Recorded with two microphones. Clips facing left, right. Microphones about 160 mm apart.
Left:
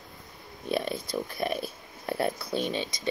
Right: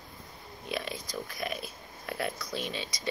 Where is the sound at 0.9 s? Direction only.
60° left (ahead or behind).